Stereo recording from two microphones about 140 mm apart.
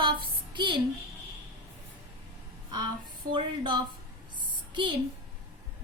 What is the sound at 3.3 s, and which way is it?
Speech, 35° right (ahead or behind).